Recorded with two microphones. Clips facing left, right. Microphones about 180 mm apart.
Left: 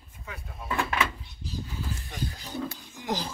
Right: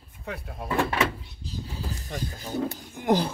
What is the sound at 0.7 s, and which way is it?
Speech, 35° right (ahead or behind).